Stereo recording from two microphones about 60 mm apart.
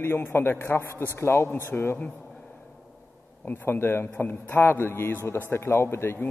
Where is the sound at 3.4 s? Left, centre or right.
Left.